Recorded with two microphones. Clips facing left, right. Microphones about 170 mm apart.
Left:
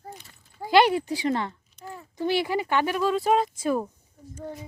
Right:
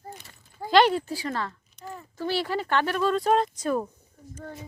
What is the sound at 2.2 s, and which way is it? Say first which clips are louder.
Speech: left 3 dB; 15° left (ahead or behind).